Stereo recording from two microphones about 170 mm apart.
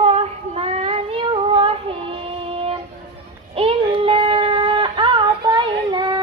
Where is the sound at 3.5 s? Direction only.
30° right (ahead or behind).